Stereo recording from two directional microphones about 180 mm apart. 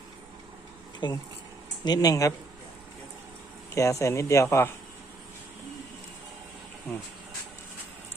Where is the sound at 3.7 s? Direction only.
15° left (ahead or behind).